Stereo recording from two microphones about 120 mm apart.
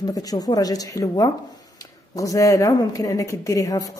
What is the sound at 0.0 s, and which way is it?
Speech, 30° left (ahead or behind).